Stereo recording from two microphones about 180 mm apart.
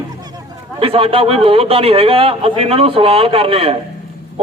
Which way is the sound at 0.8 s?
30° right (ahead or behind).